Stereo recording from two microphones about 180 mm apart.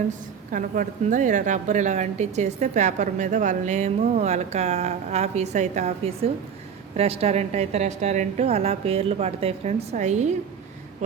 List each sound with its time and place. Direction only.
0.1 s a woman's voice: 45° right (ahead or behind)